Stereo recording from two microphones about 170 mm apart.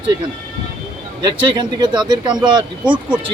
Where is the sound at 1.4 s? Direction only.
30° right (ahead or behind).